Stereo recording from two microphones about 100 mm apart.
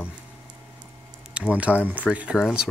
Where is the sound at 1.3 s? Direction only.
10° right (ahead or behind).